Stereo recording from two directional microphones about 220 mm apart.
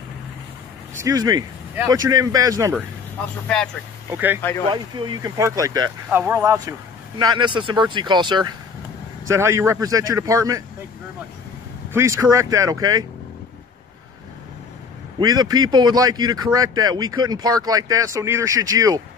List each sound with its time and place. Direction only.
1.0 s speech: 15° right (ahead or behind)
4.1 s speech: 10° right (ahead or behind)
4.6 s speech: 20° right (ahead or behind)
11.9 s speech: 15° right (ahead or behind)
15.1 s speech: 20° right (ahead or behind)